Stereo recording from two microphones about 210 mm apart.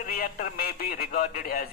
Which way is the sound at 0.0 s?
45° left (ahead or behind).